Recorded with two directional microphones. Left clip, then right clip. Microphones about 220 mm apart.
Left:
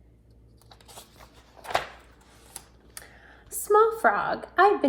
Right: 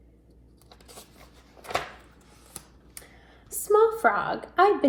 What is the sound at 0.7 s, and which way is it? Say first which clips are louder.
Biting: left 1 dB; 10° left (ahead or behind).